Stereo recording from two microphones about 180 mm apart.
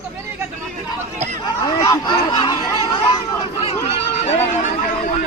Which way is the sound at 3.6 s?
35° left (ahead or behind).